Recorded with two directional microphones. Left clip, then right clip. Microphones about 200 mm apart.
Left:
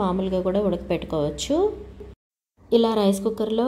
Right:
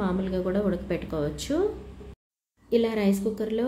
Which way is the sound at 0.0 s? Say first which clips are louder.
Left 5 dB; 20° left (ahead or behind).